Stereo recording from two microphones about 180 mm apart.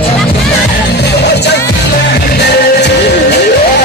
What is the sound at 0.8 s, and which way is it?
Music, 65° left (ahead or behind).